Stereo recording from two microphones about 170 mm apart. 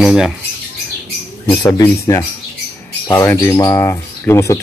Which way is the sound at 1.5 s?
20° left (ahead or behind).